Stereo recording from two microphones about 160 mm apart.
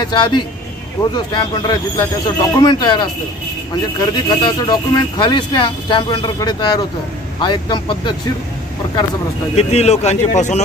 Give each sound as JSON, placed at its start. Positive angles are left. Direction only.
{"t": 0.0, "sound": "speech", "side_deg": 30}
{"t": 9.6, "sound": "a man's voice", "side_deg": 40}